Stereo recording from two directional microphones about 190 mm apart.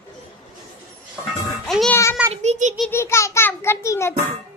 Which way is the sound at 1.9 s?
15° left (ahead or behind).